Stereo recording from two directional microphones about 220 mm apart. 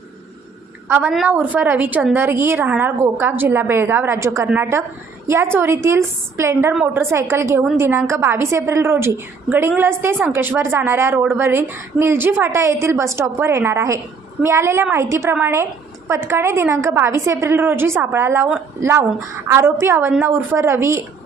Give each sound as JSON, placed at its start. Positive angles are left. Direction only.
{"t": 0.9, "sound": "a woman's voice", "side_deg": -10}